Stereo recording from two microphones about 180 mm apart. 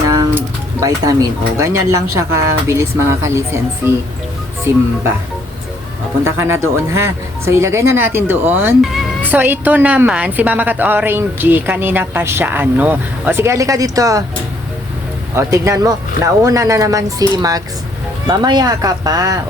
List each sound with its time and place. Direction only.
0.1 s a sound: 20° right (ahead or behind)
1.5 s a woman's voice: 15° right (ahead or behind)
6.2 s a woman's voice: 15° right (ahead or behind)
15.4 s speech: 15° right (ahead or behind)